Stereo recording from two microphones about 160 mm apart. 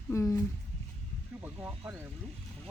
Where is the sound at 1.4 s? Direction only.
15° right (ahead or behind).